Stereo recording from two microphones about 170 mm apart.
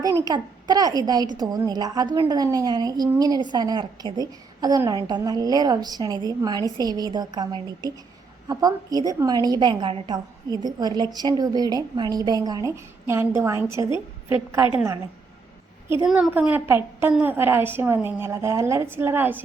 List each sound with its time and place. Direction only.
0.0 s a woman's voice: 20° right (ahead or behind)
16.0 s a woman's voice: 5° right (ahead or behind)